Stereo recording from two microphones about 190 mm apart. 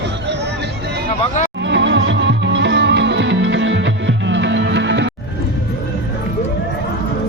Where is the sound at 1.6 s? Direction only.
70° right (ahead or behind).